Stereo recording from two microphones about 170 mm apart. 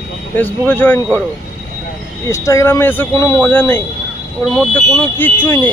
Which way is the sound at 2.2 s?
15° left (ahead or behind).